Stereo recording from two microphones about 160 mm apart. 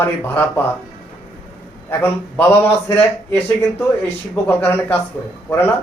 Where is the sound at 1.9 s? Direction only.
15° left (ahead or behind).